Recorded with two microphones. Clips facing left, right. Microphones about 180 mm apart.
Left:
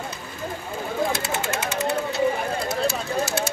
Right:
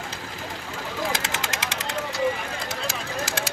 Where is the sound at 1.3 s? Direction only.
90° right.